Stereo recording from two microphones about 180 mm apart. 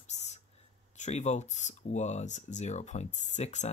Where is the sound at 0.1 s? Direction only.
40° left (ahead or behind).